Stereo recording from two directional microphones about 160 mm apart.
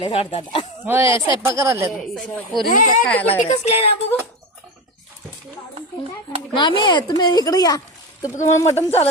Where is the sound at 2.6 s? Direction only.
55° left (ahead or behind).